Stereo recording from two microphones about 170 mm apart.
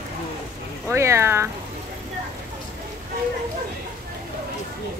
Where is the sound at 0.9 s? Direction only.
15° right (ahead or behind).